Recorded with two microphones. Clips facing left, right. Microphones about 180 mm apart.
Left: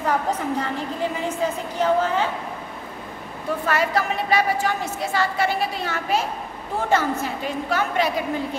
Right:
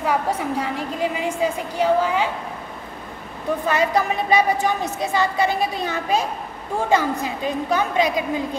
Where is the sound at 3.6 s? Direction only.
20° right (ahead or behind).